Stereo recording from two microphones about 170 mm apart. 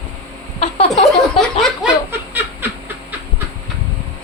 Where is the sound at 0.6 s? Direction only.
35° left (ahead or behind).